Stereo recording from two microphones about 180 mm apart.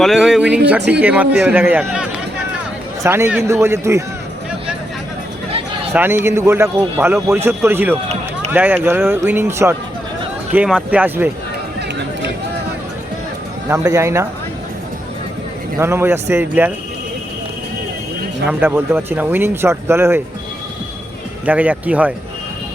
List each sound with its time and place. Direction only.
0.0 s a man's voice: centre (ahead or behind)
5.9 s a man's voice: 10° right (ahead or behind)
13.7 s a man's voice: 15° right (ahead or behind)
15.8 s a man's voice: 10° right (ahead or behind)
18.4 s a man's voice: 10° right (ahead or behind)
21.4 s a man's voice: 10° right (ahead or behind)